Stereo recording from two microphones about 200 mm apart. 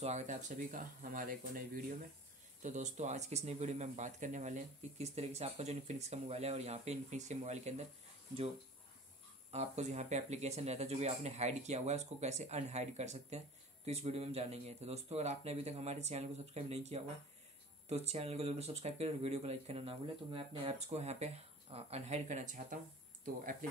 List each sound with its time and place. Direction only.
0.0 s speech: 35° right (ahead or behind)
9.5 s speech: 35° right (ahead or behind)